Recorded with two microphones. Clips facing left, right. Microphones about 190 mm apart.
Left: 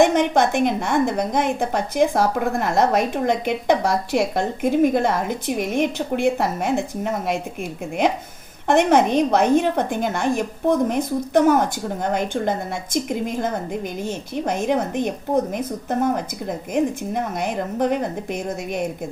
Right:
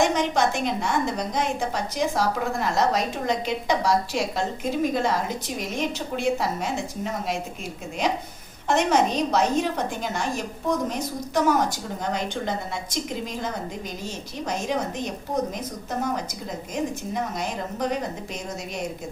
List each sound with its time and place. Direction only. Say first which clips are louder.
0.0 s a woman's voice: left 5 dB; 55° left (ahead or behind)